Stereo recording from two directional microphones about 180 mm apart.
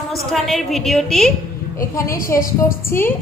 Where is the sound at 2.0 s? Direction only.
50° left (ahead or behind).